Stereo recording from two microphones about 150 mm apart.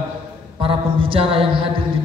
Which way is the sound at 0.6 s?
35° right (ahead or behind).